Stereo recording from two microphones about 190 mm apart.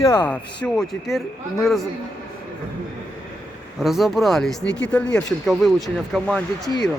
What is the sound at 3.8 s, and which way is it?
Speech, centre (ahead or behind).